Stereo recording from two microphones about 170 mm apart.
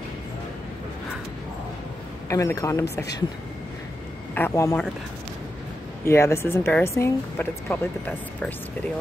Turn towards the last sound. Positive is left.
turn(degrees=15)  # may be behind; listen again after turning